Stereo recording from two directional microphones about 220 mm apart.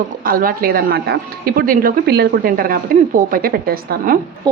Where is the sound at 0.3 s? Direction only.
40° right (ahead or behind).